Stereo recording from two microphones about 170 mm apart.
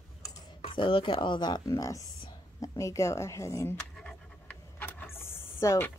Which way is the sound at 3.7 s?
5° left (ahead or behind).